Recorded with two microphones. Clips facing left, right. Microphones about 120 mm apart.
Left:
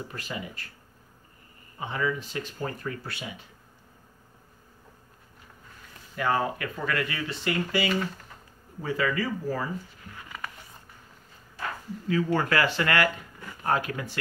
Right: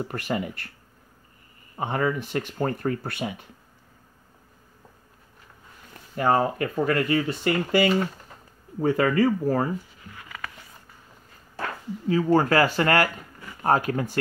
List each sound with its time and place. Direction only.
0.0 s speech: 60° right (ahead or behind)
1.8 s speech: 50° right (ahead or behind)
6.1 s speech: 40° right (ahead or behind)
12.1 s speech: 35° right (ahead or behind)